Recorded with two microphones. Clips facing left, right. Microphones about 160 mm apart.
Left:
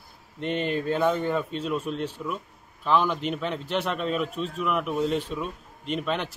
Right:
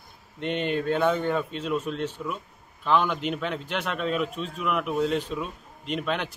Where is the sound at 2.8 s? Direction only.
Centre (ahead or behind).